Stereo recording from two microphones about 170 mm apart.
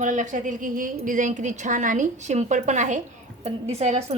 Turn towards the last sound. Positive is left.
turn(degrees=-40)  # may be behind; listen again after turning